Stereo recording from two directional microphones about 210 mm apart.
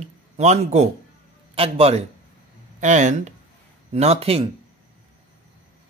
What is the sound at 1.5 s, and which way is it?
A man's voice, 25° right (ahead or behind).